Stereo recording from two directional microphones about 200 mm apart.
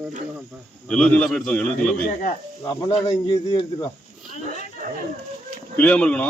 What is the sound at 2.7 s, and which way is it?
Speech, 25° left (ahead or behind).